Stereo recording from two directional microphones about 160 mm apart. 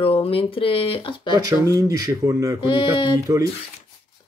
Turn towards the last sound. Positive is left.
turn(degrees=-20)  # may be behind; listen again after turning